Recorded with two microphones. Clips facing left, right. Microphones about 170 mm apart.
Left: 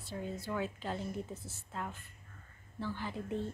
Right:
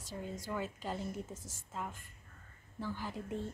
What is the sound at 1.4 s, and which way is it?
Speech, 90° right.